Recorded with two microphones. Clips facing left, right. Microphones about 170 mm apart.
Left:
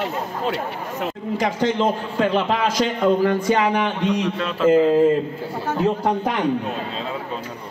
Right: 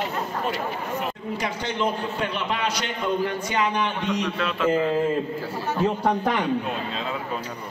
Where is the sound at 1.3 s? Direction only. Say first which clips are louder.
Left 10 dB; 90° left.